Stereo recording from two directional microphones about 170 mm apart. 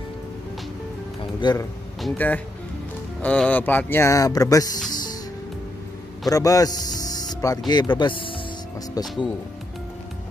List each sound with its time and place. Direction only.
1.4 s speech: 25° left (ahead or behind)
2.0 s speech: 5° left (ahead or behind); by 4.9 s 20° left (ahead or behind)
6.2 s speech: 20° left (ahead or behind)